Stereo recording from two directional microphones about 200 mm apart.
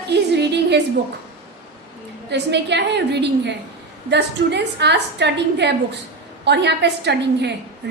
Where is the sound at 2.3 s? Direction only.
60° right (ahead or behind).